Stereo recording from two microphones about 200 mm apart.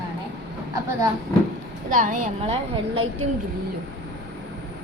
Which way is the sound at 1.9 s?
40° right (ahead or behind).